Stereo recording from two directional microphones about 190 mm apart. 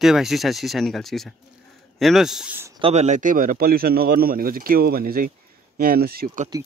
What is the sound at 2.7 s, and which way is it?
Speech, 30° right (ahead or behind).